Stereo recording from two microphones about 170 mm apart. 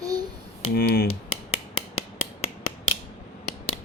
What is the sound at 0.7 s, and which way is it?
Speech, 70° left (ahead or behind).